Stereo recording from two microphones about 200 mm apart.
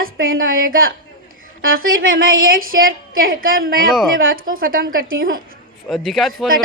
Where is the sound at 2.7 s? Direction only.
45° right (ahead or behind).